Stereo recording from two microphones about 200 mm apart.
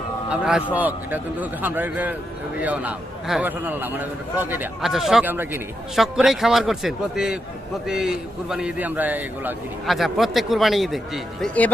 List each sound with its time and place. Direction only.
0.3 s a man's voice: 5° right (ahead or behind)